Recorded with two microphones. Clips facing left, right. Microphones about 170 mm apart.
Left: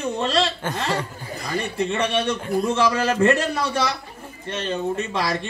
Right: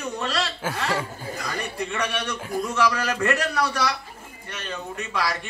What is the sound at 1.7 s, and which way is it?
Speech, 25° left (ahead or behind).